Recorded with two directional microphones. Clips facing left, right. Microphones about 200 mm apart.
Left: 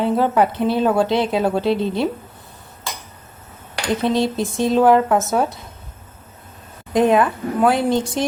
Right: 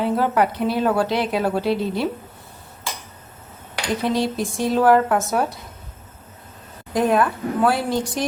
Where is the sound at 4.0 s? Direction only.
25° left (ahead or behind).